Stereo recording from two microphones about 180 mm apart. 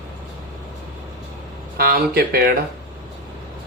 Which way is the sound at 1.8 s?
55° right (ahead or behind).